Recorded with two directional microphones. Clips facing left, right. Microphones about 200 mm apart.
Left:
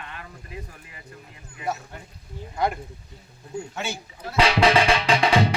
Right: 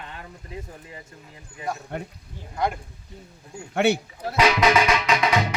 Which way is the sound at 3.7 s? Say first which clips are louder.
Right 16 dB; 65° right (ahead or behind).